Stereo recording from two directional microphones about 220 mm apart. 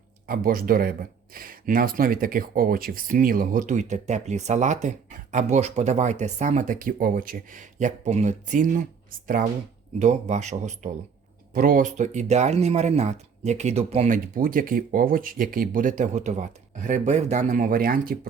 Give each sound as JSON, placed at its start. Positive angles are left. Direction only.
{"t": 0.3, "sound": "speech", "side_deg": -40}